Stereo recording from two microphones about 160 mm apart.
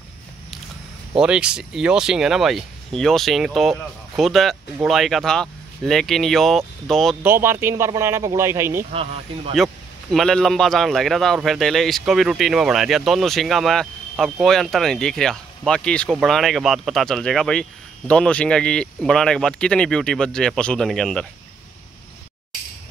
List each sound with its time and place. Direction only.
1.1 s speech: 5° right (ahead or behind)
7.2 s speech: 15° right (ahead or behind)
8.9 s speech: 40° right (ahead or behind)
10.1 s speech: 5° left (ahead or behind)